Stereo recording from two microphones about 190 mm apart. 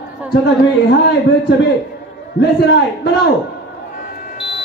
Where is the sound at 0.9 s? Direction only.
60° left (ahead or behind).